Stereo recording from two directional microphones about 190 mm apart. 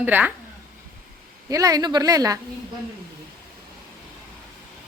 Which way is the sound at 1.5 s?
20° right (ahead or behind).